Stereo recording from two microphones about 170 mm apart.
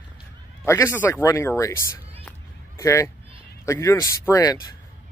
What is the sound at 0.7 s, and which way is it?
Speech, 15° left (ahead or behind).